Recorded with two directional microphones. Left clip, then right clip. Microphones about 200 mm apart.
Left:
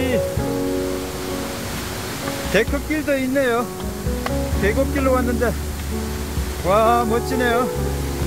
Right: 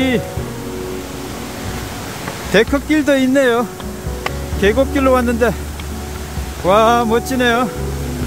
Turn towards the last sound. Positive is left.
turn(degrees=-20)  # may be behind; listen again after turning